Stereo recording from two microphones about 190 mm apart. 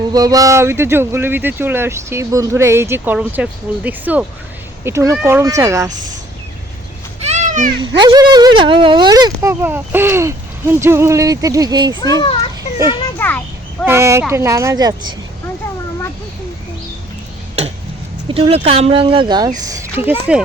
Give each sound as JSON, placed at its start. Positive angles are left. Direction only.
{"t": 0.1, "sound": "speech", "side_deg": -20}
{"t": 7.3, "sound": "a sound", "side_deg": -40}
{"t": 7.8, "sound": "speech", "side_deg": -20}
{"t": 11.9, "sound": "a child's voice", "side_deg": 20}
{"t": 13.1, "sound": "a sound", "side_deg": 10}
{"t": 13.8, "sound": "speech", "side_deg": -15}
{"t": 18.3, "sound": "speech", "side_deg": -30}